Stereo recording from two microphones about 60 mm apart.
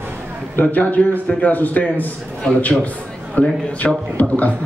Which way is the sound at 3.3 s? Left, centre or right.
Left.